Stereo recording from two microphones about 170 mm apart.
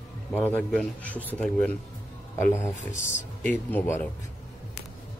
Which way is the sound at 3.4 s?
10° left (ahead or behind).